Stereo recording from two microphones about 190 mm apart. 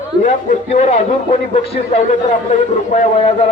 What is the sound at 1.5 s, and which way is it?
A man's voice, 30° left (ahead or behind).